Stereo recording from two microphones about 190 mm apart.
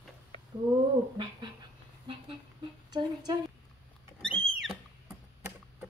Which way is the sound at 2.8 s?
20° right (ahead or behind).